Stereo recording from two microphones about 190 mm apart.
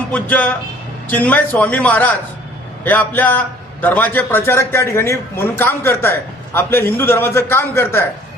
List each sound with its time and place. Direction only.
0.1 s a man's voice: 10° left (ahead or behind)